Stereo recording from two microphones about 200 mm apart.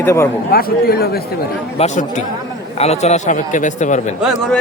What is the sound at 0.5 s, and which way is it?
Speech, 50° left (ahead or behind).